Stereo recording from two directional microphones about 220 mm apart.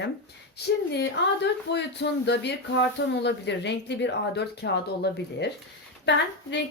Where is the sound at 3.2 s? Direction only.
50° left (ahead or behind).